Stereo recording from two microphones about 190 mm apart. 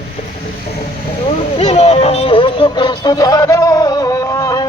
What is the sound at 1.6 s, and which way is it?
Music, 35° left (ahead or behind).